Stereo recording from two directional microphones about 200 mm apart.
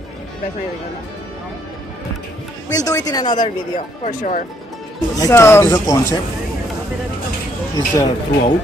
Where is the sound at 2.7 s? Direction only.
15° left (ahead or behind).